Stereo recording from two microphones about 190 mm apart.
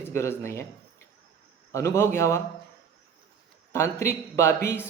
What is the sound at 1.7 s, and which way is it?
Speech, 15° left (ahead or behind).